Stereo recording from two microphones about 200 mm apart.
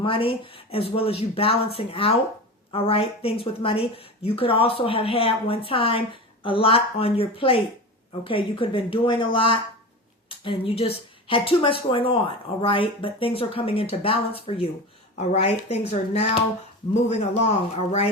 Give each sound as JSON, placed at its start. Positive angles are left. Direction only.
{"t": 0.0, "sound": "a woman's voice", "side_deg": 25}